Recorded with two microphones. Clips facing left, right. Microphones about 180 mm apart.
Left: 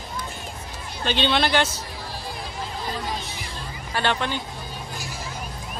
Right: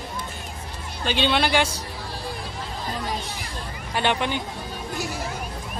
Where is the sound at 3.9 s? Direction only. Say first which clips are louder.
Right 1 dB; 15° right (ahead or behind).